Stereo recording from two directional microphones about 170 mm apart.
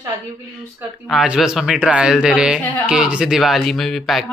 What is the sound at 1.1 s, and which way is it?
Speech, 5° right (ahead or behind).